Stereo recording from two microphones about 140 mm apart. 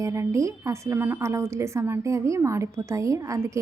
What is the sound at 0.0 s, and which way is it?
A woman's voice, 20° right (ahead or behind).